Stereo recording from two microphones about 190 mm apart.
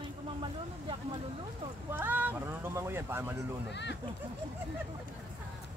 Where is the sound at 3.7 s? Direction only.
65° left (ahead or behind).